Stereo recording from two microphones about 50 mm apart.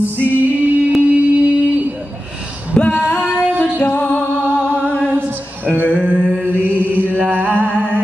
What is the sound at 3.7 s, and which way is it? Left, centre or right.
Music, left.